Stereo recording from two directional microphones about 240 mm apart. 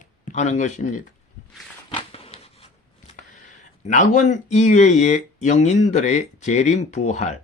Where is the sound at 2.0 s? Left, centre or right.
Left.